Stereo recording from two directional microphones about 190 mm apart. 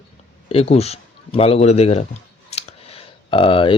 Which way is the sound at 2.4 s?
30° left (ahead or behind).